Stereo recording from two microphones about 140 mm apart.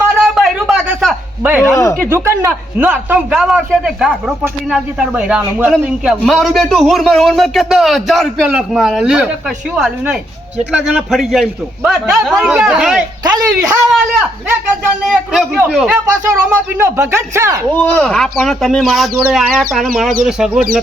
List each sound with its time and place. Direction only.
0.2 s a sound: centre (ahead or behind)
2.0 s a man's voice: 20° right (ahead or behind)
13.2 s speech: 30° right (ahead or behind)
13.6 s a man's voice: 5° right (ahead or behind)
16.2 s speech: 20° right (ahead or behind)
17.7 s a man's voice: 10° left (ahead or behind)